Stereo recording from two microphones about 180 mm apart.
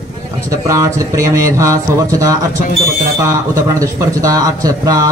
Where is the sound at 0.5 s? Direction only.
15° right (ahead or behind).